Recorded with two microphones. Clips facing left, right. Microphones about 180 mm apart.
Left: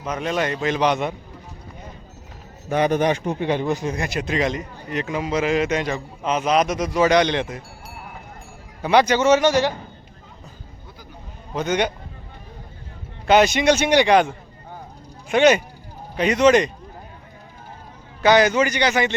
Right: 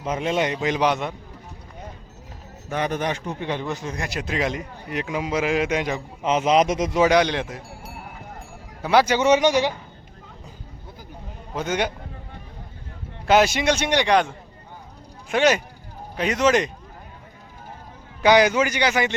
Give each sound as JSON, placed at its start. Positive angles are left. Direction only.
{"t": 0.0, "sound": "a man's voice", "side_deg": -25}
{"t": 2.6, "sound": "a man's voice", "side_deg": 15}
{"t": 4.0, "sound": "a man's voice", "side_deg": 0}
{"t": 7.1, "sound": "a man's voice", "side_deg": -5}
{"t": 8.8, "sound": "a man's voice", "side_deg": 0}
{"t": 9.1, "sound": "a man's voice", "side_deg": -15}
{"t": 11.5, "sound": "a man's voice", "side_deg": -5}
{"t": 13.2, "sound": "a man's voice", "side_deg": -5}
{"t": 18.2, "sound": "a man's voice", "side_deg": -10}